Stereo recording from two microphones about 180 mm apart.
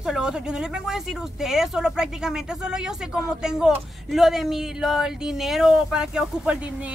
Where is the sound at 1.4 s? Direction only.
5° right (ahead or behind).